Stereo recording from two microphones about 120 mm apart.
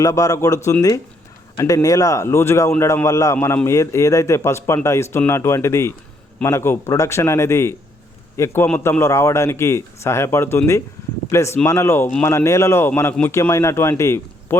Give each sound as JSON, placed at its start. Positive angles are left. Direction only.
{"t": 0.0, "sound": "a man's voice", "side_deg": 30}